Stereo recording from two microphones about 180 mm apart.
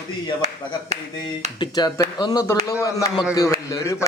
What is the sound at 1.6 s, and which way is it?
A man's voice, 20° left (ahead or behind).